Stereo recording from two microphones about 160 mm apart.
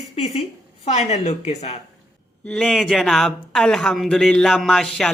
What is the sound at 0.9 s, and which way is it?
Speech, 45° left (ahead or behind).